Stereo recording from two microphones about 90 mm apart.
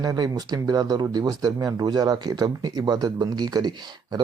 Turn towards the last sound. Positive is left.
turn(degrees=-50)  # may be behind; listen again after turning